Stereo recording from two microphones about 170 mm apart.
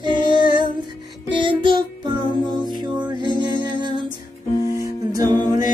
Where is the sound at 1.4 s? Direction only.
25° right (ahead or behind).